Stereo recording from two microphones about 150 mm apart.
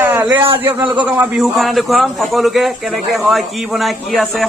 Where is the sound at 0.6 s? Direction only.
15° right (ahead or behind).